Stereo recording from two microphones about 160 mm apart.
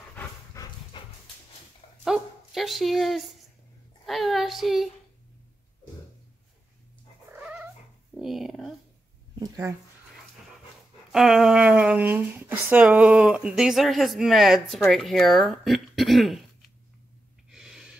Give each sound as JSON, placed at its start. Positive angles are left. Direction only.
{"t": 0.6, "sound": "dog", "side_deg": 20}
{"t": 2.0, "sound": "dog", "side_deg": 0}
{"t": 4.0, "sound": "speech", "side_deg": 0}
{"t": 7.2, "sound": "cat", "side_deg": -10}
{"t": 9.4, "sound": "a sound", "side_deg": -15}
{"t": 11.1, "sound": "speech", "side_deg": 0}
{"t": 17.5, "sound": "gasp", "side_deg": 0}